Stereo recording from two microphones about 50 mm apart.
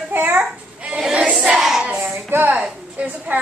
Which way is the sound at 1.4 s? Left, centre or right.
Centre.